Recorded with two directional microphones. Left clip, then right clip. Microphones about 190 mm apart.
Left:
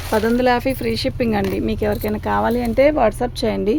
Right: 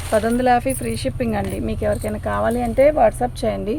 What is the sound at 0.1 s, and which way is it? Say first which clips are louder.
Speech: even; 60° left (ahead or behind).